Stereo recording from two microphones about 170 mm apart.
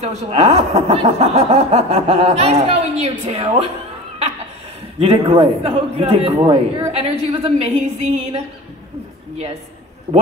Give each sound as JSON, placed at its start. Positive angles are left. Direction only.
{"t": 0.0, "sound": "a man's voice", "side_deg": -35}
{"t": 4.9, "sound": "a man's voice", "side_deg": -35}